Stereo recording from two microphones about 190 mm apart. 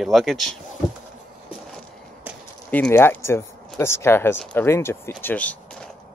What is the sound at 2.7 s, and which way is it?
Speech, 10° left (ahead or behind).